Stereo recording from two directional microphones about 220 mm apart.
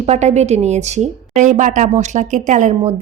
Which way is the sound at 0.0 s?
30° right (ahead or behind).